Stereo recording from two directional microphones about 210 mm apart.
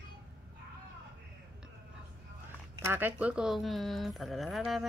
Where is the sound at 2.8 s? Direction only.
10° right (ahead or behind).